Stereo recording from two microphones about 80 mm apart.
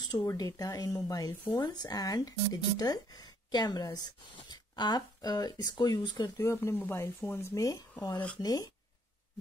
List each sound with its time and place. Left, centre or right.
0.4 s speech: left
6.5 s speech: left